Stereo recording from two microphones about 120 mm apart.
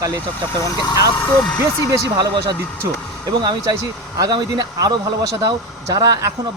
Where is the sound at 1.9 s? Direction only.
35° right (ahead or behind).